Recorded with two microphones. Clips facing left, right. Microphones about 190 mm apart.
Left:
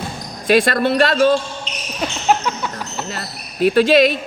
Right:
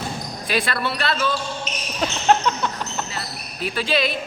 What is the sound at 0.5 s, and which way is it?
Speech, 45° left (ahead or behind).